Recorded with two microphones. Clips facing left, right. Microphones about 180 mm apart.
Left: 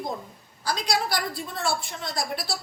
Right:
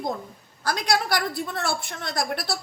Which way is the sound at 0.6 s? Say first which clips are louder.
Right 2 dB; 55° right (ahead or behind).